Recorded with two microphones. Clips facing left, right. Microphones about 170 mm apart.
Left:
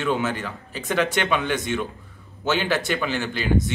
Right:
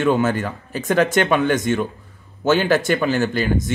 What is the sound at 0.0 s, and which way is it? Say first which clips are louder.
A man's voice: right 6 dB; 45° right (ahead or behind).